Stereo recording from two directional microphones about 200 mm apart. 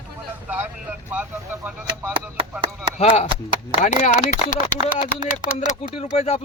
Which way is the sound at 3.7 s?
35° left (ahead or behind).